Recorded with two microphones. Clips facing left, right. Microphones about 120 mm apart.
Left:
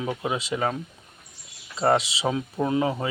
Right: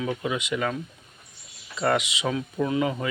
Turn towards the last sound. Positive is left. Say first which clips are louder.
# left 1 dB
turn(degrees=30)  # may be behind; listen again after turning